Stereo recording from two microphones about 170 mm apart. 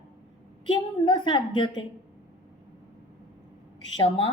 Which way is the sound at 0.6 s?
25° left (ahead or behind).